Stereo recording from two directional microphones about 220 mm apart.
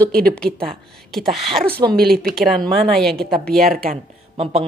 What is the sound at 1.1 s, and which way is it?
Speech, centre (ahead or behind).